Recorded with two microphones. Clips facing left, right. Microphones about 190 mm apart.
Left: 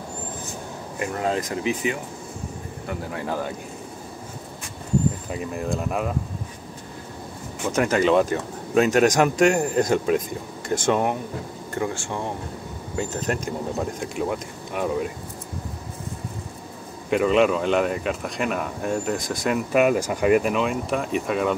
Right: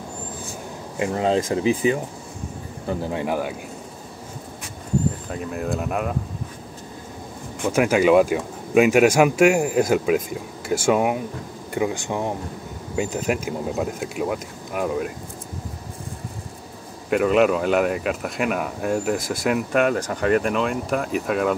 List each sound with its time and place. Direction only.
0.9 s speech: 25° right (ahead or behind)
2.9 s speech: 20° right (ahead or behind)
5.3 s speech: centre (ahead or behind)
7.6 s speech: 10° right (ahead or behind)
17.1 s speech: 5° right (ahead or behind)